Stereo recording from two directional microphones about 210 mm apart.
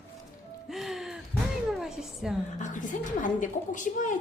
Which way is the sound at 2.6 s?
35° left (ahead or behind).